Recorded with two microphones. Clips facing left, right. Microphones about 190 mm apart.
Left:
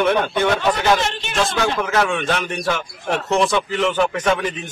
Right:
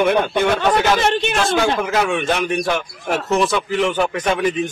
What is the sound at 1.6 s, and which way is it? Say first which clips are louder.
A man's voice: right 1 dB; 10° right (ahead or behind).